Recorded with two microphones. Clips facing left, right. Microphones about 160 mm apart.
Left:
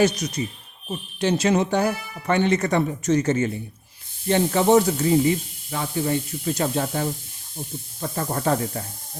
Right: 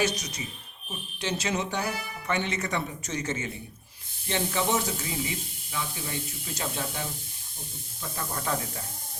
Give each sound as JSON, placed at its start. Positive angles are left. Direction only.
{"t": 1.2, "sound": "speech", "side_deg": 55}
{"t": 8.1, "sound": "speech", "side_deg": 50}